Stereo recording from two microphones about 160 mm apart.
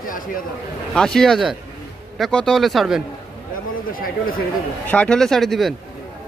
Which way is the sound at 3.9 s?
60° left (ahead or behind).